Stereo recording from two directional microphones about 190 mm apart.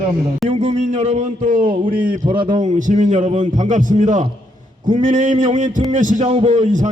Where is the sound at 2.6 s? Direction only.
40° right (ahead or behind).